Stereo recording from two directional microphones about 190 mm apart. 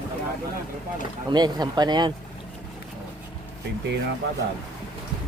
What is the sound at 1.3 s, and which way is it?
Speech, 20° right (ahead or behind).